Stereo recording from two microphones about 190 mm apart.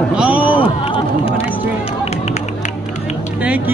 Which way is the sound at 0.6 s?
30° left (ahead or behind).